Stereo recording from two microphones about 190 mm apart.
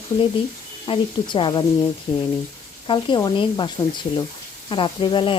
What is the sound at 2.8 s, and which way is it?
Speech, 25° left (ahead or behind).